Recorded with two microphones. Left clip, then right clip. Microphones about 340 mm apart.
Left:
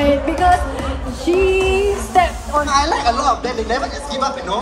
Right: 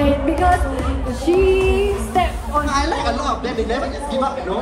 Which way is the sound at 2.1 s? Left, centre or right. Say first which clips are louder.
Left 5 dB; left.